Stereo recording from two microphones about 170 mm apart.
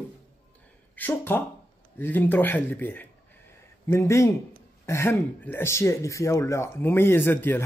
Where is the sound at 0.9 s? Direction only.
10° left (ahead or behind).